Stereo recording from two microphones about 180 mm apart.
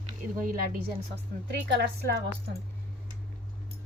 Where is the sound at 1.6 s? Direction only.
65° right (ahead or behind).